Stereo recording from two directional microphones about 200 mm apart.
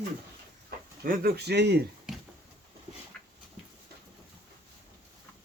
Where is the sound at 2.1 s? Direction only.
Centre (ahead or behind).